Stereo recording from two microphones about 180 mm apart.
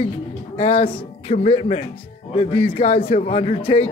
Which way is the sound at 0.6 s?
30° left (ahead or behind).